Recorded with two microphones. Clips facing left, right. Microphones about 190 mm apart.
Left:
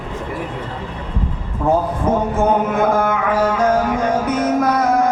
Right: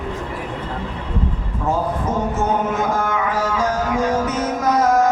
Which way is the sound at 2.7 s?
55° left (ahead or behind).